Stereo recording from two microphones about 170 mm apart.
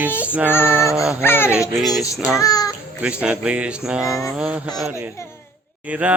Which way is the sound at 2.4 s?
20° left (ahead or behind).